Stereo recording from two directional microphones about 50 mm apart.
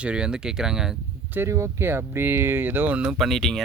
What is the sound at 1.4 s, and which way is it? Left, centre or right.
Speech, right.